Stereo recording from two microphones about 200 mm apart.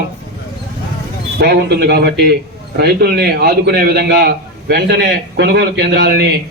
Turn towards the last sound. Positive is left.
turn(degrees=-55)  # may be behind; listen again after turning